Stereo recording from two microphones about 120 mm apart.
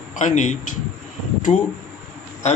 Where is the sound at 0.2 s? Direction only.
90° left.